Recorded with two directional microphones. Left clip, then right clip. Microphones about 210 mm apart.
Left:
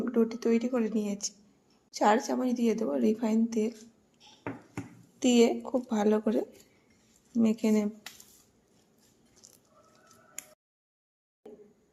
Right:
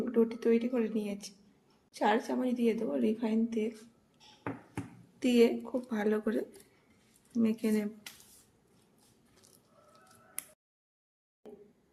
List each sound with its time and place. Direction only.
0.0 s a woman's voice: 20° left (ahead or behind)
5.2 s a woman's voice: 20° left (ahead or behind)
7.4 s a woman's voice: 25° left (ahead or behind)
11.4 s a sound: centre (ahead or behind)